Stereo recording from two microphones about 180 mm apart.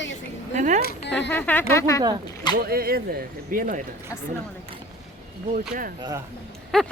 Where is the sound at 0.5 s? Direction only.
40° right (ahead or behind).